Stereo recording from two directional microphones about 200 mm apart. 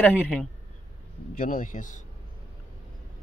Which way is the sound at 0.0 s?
5° left (ahead or behind).